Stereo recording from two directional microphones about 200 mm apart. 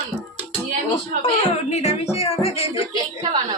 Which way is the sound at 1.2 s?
35° left (ahead or behind).